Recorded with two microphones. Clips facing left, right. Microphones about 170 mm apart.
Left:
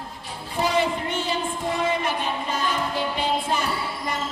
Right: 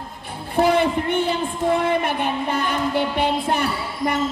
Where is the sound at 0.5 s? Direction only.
55° right (ahead or behind).